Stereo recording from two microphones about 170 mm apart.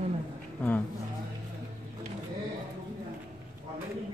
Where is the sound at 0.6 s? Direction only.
10° left (ahead or behind).